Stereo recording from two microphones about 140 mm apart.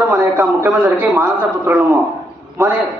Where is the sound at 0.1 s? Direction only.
20° right (ahead or behind).